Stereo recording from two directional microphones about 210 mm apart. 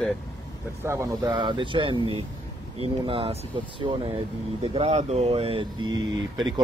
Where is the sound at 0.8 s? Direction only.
15° right (ahead or behind).